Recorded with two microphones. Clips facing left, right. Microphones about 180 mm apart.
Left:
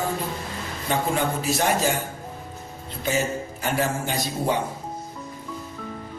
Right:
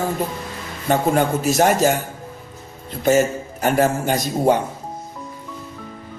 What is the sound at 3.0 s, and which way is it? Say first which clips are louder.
Speech: right 9 dB; 45° right (ahead or behind).